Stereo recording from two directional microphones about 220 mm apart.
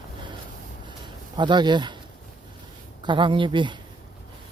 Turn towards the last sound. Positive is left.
turn(degrees=-20)  # may be behind; listen again after turning